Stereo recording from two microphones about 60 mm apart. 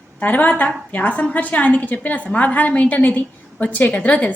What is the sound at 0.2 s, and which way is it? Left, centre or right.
A woman's voice, left.